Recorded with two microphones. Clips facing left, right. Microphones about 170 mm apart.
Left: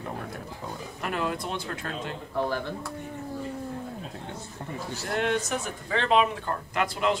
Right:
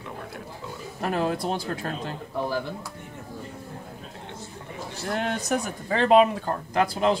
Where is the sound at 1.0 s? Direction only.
35° right (ahead or behind).